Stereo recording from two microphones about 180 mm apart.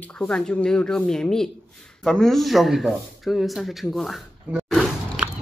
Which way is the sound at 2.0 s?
Centre (ahead or behind).